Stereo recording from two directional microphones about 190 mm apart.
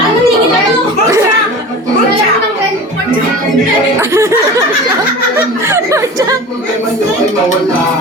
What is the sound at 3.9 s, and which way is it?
Speech, 15° right (ahead or behind).